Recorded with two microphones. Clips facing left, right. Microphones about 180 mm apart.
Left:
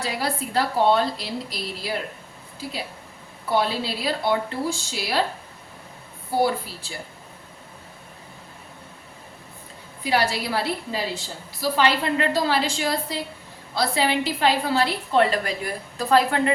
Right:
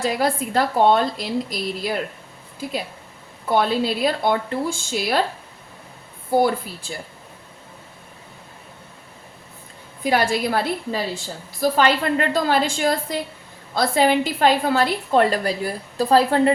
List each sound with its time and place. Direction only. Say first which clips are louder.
0.0 s a woman's voice: right 6 dB; 50° right (ahead or behind)
3.6 s a woman's voice: right 5 dB; 50° right (ahead or behind)
10.0 s a woman's voice: right 3 dB; 50° right (ahead or behind)